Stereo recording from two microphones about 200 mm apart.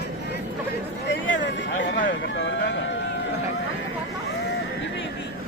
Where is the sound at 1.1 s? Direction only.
65° left (ahead or behind).